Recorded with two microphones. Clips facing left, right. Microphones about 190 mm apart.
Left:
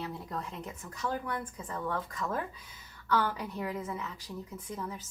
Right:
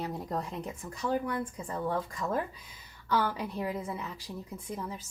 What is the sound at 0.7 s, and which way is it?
Speech, 15° right (ahead or behind).